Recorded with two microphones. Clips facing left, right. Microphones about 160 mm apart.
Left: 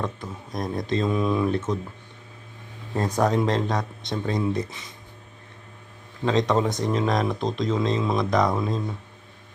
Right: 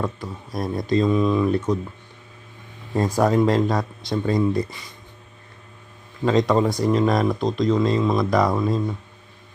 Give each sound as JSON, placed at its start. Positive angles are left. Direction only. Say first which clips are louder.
{"t": 0.0, "sound": "speech", "louder": "right 3 dB", "side_deg": -5}
{"t": 3.2, "sound": "speech", "louder": "right 4 dB", "side_deg": 0}
{"t": 6.2, "sound": "speech", "louder": "right 3 dB", "side_deg": 0}